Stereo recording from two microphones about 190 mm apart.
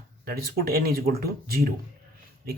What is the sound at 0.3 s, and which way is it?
Speech, 55° right (ahead or behind).